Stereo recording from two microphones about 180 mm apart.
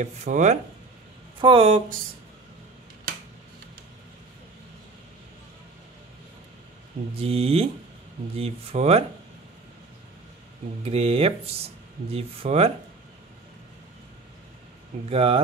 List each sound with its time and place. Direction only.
0.0 s speech: 45° right (ahead or behind)
1.4 s speech: 30° right (ahead or behind)
7.2 s speech: 35° right (ahead or behind)
10.8 s speech: 35° right (ahead or behind)
15.0 s speech: 30° right (ahead or behind)